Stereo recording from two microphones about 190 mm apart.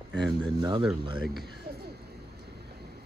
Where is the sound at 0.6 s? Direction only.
25° right (ahead or behind).